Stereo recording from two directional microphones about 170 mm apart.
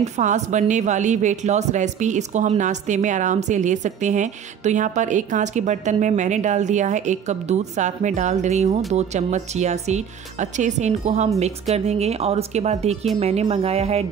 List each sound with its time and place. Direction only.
0.0 s speech: 45° right (ahead or behind)